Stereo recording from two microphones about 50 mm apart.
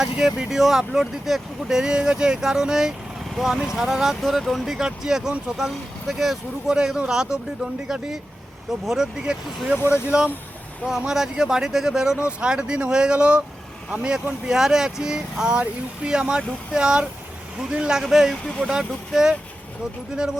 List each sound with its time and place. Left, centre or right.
0.0 s speech: centre; by 10.3 s right
11.1 s speech: centre
18.0 s speech: centre